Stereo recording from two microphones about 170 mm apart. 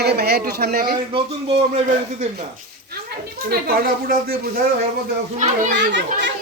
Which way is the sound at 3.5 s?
65° right (ahead or behind).